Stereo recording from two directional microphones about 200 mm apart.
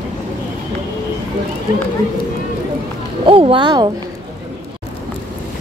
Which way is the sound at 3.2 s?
25° right (ahead or behind).